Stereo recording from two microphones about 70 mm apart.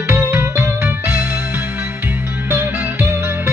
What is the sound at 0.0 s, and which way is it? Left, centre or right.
Music, right.